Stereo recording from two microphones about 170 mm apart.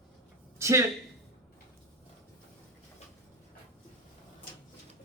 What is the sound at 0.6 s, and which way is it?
Speech, 15° right (ahead or behind).